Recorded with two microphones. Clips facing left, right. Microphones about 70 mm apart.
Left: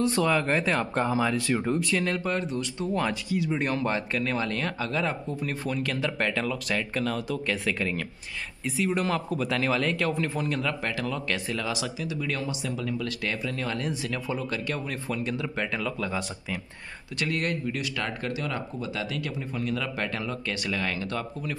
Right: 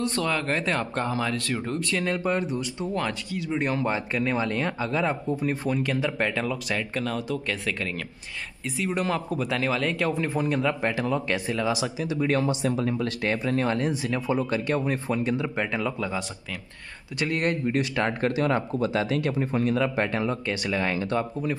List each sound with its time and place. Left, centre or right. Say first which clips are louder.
0.0 s speech: left 2 dB; centre
2.2 s speech: right 3 dB; centre
2.9 s speech: left 3 dB; centre
16.1 s speech: even; centre
17.2 s speech: right 3 dB; right